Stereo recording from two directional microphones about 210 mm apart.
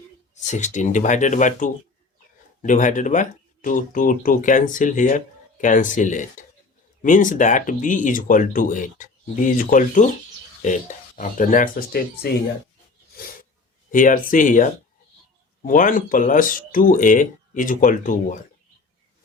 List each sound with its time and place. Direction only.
0.4 s speech: 35° left (ahead or behind)
13.9 s speech: 40° left (ahead or behind)